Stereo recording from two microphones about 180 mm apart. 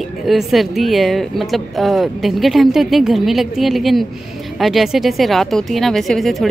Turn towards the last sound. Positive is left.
turn(degrees=0)  # may be behind; listen again after turning